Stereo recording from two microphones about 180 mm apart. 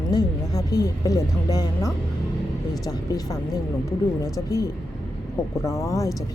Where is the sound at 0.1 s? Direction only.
20° left (ahead or behind).